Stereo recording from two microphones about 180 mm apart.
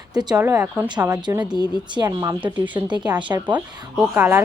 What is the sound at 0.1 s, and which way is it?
Speech, 20° right (ahead or behind).